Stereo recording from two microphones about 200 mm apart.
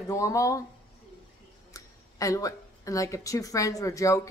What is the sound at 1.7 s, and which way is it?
Speech, 15° left (ahead or behind).